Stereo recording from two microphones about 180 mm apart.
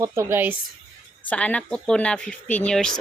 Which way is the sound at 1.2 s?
5° left (ahead or behind).